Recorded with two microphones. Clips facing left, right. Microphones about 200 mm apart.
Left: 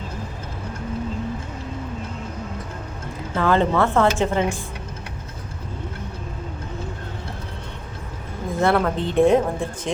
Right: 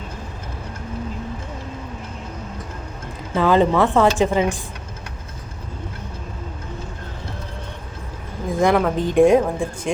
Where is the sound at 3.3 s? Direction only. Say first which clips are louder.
Right 3 dB; 15° right (ahead or behind).